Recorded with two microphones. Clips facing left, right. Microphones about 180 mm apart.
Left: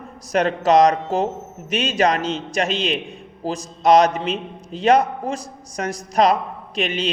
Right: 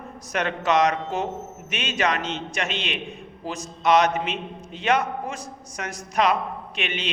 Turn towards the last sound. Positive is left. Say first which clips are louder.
# left 7 dB
turn(degrees=35)  # may be behind; listen again after turning